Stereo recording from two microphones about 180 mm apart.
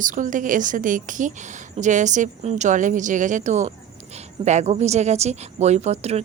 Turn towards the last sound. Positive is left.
turn(degrees=-35)  # may be behind; listen again after turning